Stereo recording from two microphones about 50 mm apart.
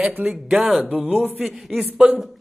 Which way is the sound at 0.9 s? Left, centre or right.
Right.